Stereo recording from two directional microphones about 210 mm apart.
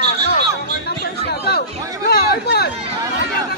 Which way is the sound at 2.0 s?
50° left (ahead or behind).